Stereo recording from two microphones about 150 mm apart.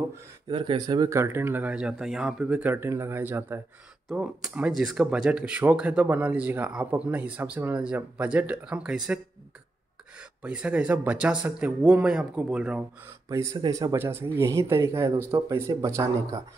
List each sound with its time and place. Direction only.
0.5 s speech: 35° right (ahead or behind); by 9.2 s 5° right (ahead or behind)
10.4 s speech: 5° right (ahead or behind)
13.3 s speech: 20° right (ahead or behind)